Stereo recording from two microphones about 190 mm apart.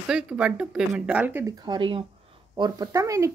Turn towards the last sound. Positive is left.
turn(degrees=-15)  # may be behind; listen again after turning